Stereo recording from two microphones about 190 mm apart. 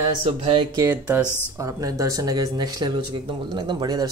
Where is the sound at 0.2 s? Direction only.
25° right (ahead or behind).